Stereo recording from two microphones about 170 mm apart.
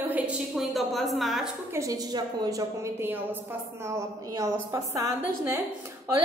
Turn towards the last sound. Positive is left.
turn(degrees=-15)  # may be behind; listen again after turning